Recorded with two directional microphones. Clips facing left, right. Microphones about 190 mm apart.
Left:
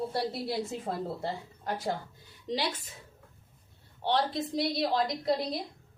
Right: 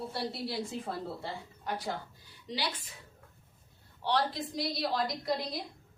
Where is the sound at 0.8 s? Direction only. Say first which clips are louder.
Left 4 dB; 45° left (ahead or behind).